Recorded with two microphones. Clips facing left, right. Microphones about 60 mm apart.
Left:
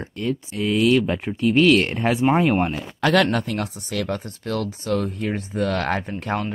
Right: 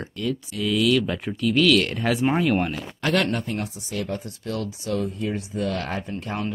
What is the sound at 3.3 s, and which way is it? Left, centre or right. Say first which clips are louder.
Speech: left 3 dB; left.